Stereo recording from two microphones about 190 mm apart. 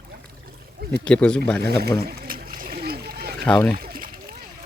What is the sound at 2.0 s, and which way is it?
Splash, 50° right (ahead or behind).